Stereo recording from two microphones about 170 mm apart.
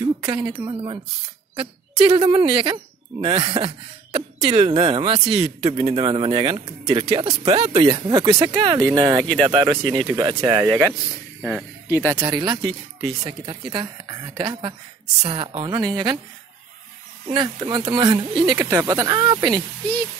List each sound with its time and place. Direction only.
0.6 s speech: 30° right (ahead or behind)
7.6 s speech: 40° right (ahead or behind)
17.3 s speech: 25° right (ahead or behind)